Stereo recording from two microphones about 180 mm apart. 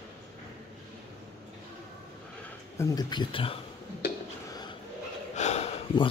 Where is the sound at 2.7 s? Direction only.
20° left (ahead or behind).